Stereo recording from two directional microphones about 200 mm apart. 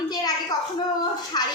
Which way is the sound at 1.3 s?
20° left (ahead or behind).